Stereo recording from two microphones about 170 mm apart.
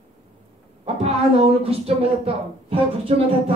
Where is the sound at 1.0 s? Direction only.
35° right (ahead or behind).